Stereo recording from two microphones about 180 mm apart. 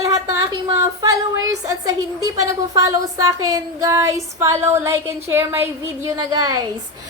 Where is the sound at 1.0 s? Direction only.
20° right (ahead or behind).